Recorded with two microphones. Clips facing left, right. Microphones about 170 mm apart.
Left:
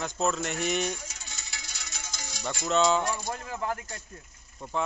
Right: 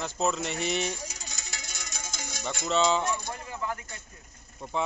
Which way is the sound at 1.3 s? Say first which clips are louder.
Right 3 dB; 45° right (ahead or behind).